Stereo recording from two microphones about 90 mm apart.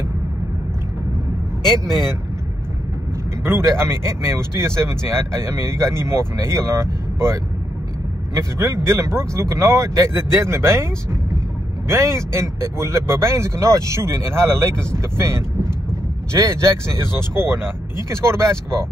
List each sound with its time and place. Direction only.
3.5 s speech: 30° right (ahead or behind)
8.4 s speech: 35° right (ahead or behind)
11.9 s speech: 30° right (ahead or behind)